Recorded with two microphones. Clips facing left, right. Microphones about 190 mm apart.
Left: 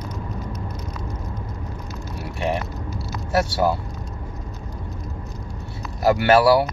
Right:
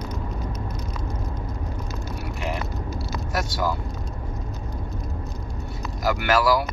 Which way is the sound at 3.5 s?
30° left (ahead or behind).